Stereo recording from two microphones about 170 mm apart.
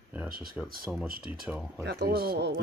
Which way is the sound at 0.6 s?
Centre (ahead or behind).